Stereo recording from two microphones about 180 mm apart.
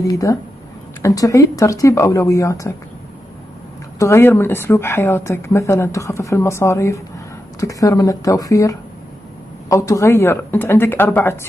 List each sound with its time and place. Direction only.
0.0 s speech: 20° left (ahead or behind)
4.0 s speech: 15° left (ahead or behind)